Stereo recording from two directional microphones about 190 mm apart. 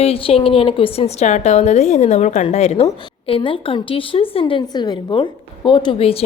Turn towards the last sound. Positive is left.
turn(degrees=30)  # may be behind; listen again after turning